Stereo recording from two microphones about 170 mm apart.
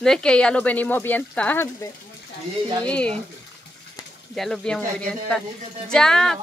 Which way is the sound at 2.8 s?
5° left (ahead or behind).